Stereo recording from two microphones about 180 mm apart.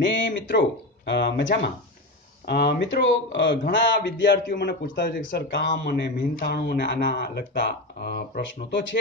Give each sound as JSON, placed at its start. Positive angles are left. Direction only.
{"t": 0.0, "sound": "speech", "side_deg": 90}